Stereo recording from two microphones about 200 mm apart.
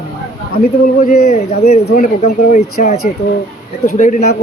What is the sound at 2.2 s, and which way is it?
Speech, 35° left (ahead or behind).